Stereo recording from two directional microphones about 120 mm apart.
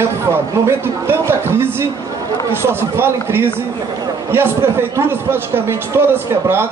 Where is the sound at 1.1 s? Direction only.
20° right (ahead or behind).